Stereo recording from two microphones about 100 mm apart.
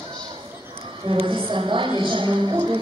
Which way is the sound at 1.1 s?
60° right (ahead or behind).